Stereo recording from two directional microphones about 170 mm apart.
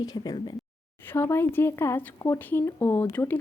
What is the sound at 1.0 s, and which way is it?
Speech, 10° left (ahead or behind).